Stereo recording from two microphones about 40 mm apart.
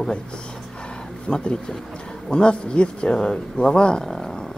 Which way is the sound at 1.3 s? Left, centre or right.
Left.